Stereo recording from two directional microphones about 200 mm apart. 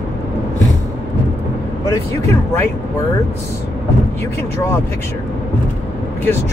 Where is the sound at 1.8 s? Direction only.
15° left (ahead or behind).